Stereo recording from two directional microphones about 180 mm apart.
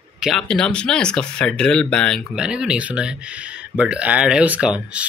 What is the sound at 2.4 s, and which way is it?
Speech, 5° right (ahead or behind).